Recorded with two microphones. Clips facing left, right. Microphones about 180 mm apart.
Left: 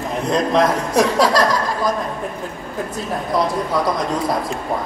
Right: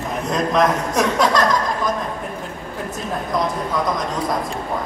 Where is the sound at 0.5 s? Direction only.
35° left (ahead or behind).